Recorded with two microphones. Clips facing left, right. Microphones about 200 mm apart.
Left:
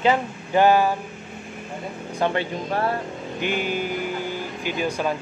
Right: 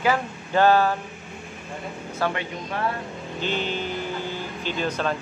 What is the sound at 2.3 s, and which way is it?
Speech, 30° left (ahead or behind).